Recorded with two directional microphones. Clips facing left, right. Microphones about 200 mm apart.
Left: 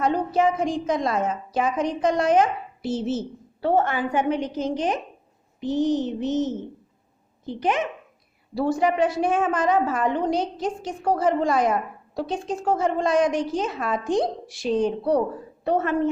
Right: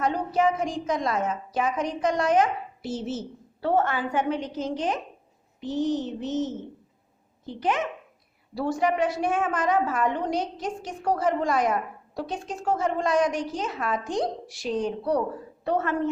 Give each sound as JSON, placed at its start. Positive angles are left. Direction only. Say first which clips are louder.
{"t": 0.0, "sound": "a woman's voice", "louder": "left 3 dB", "side_deg": 30}
{"t": 3.6, "sound": "a woman's voice", "louder": "left 2 dB", "side_deg": 15}